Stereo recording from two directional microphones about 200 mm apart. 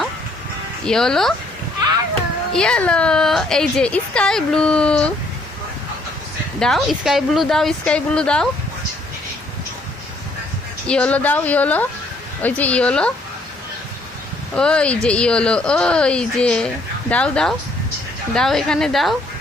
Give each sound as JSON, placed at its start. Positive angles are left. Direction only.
{"t": 0.9, "sound": "speech", "side_deg": 0}
{"t": 2.5, "sound": "speech", "side_deg": 5}
{"t": 6.6, "sound": "speech", "side_deg": 0}
{"t": 10.8, "sound": "a woman's voice", "side_deg": 5}
{"t": 14.5, "sound": "speech", "side_deg": 5}